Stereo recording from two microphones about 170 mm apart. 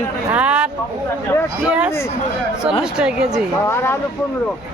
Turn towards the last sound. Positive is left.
turn(degrees=15)  # may be behind; listen again after turning